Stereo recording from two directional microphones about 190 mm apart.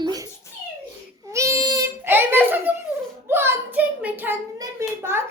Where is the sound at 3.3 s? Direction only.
10° right (ahead or behind).